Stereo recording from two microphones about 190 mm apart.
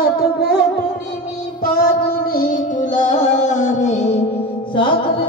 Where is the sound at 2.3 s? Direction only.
45° left (ahead or behind).